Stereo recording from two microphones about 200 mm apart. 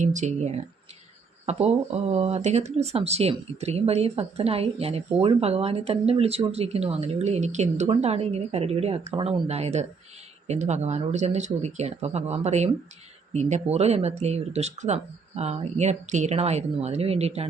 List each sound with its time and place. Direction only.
0.0 s speech: 35° right (ahead or behind)